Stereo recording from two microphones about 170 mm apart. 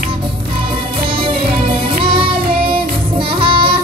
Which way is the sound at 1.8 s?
30° right (ahead or behind).